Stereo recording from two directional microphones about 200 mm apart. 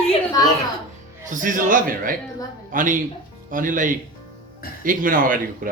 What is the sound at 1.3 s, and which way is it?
A man's voice, 40° right (ahead or behind).